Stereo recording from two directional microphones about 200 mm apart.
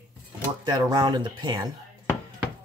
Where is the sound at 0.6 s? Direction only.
20° right (ahead or behind).